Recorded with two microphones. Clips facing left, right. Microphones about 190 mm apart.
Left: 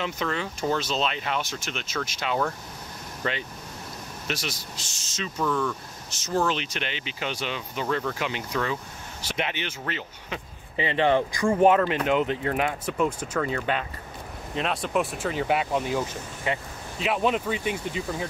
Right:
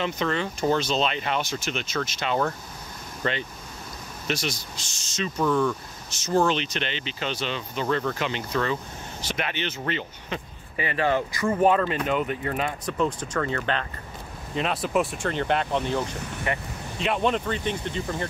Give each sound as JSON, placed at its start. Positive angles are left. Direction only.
{"t": 0.0, "sound": "speech", "side_deg": 5}
{"t": 5.4, "sound": "speech", "side_deg": -10}
{"t": 6.0, "sound": "speech", "side_deg": 5}
{"t": 10.8, "sound": "speech", "side_deg": 20}
{"t": 17.0, "sound": "speech", "side_deg": 5}